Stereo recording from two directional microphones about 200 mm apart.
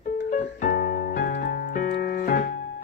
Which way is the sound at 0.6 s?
45° left (ahead or behind).